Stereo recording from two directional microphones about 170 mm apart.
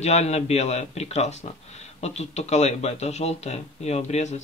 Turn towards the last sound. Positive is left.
turn(degrees=40)  # may be behind; listen again after turning